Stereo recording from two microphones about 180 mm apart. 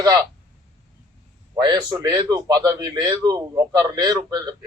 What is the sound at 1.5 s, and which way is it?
Speech, 25° right (ahead or behind).